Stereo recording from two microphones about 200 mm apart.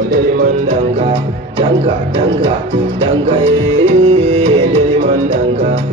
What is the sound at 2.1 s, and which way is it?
Music, 25° right (ahead or behind).